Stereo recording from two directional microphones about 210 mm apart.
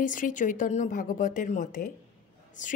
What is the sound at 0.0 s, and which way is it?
A woman's voice, 40° left (ahead or behind).